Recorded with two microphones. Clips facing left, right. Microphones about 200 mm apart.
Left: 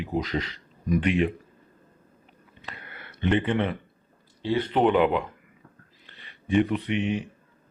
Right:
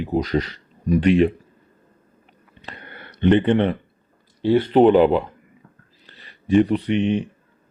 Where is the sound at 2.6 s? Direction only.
35° right (ahead or behind).